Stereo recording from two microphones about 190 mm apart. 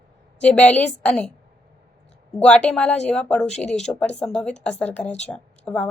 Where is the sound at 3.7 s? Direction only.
5° left (ahead or behind).